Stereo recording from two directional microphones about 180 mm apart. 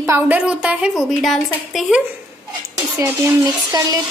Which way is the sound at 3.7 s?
20° right (ahead or behind).